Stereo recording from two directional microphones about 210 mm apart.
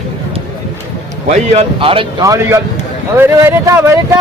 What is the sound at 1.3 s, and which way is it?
A man's voice, 30° right (ahead or behind).